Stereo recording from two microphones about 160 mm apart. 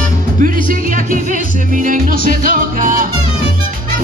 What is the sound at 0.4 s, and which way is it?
Music, 55° right (ahead or behind).